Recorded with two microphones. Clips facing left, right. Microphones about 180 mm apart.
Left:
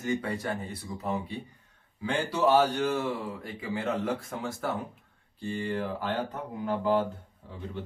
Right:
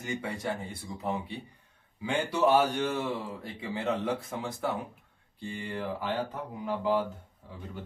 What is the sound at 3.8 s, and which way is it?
A man's voice, 15° right (ahead or behind).